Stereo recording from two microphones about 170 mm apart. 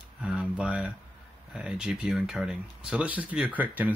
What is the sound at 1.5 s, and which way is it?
Speech, 5° right (ahead or behind).